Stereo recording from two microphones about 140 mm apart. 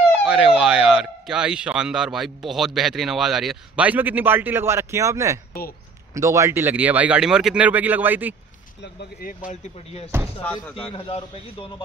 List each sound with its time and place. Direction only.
0.2 s speech: 5° right (ahead or behind)
9.2 s speech: 90° left
10.9 s a man's voice: 45° left (ahead or behind)